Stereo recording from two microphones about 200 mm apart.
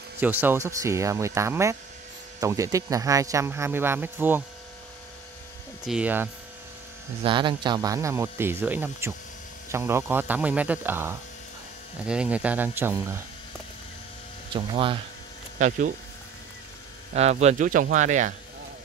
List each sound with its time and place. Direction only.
0.2 s speech: 10° right (ahead or behind)
5.9 s speech: 5° right (ahead or behind)
7.2 s speech: 25° right (ahead or behind)
14.5 s speech: 25° right (ahead or behind)
15.6 s speech: 40° right (ahead or behind)
17.1 s speech: 35° right (ahead or behind)